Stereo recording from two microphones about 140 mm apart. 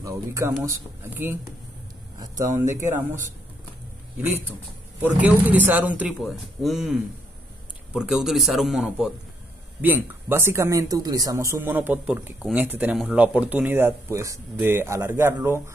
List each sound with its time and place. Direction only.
0.0 s speech: 20° right (ahead or behind)
2.1 s speech: 25° right (ahead or behind)
5.0 s speech: 10° right (ahead or behind)
6.2 s a man's voice: centre (ahead or behind); by 15.7 s 15° right (ahead or behind)